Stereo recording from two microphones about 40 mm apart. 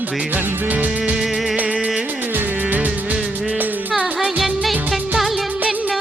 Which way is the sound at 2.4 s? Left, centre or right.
Right.